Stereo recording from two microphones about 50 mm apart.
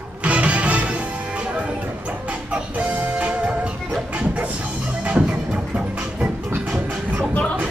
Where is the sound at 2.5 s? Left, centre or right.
Right.